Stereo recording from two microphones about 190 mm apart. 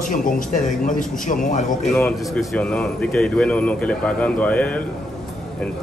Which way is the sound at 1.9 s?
Centre (ahead or behind).